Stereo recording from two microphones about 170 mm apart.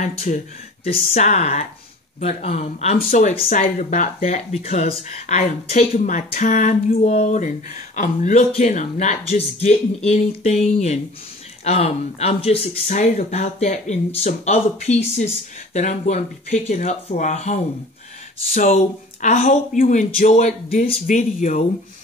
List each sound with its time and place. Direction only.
0.3 s speech: 45° left (ahead or behind)
3.0 s speech: 50° left (ahead or behind)